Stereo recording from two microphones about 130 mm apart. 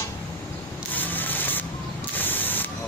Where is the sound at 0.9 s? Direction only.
15° left (ahead or behind).